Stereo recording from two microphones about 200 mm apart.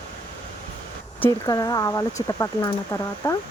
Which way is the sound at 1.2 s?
15° left (ahead or behind).